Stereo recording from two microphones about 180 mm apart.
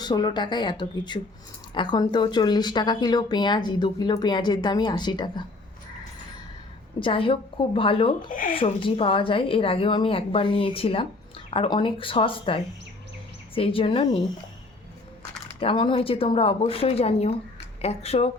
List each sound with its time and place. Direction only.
0.0 s speech: 25° left (ahead or behind)
7.0 s speech: 30° left (ahead or behind)
8.3 s speech: 50° left (ahead or behind)
8.5 s a woman's voice: 30° left (ahead or behind)
15.6 s a woman's voice: 30° left (ahead or behind)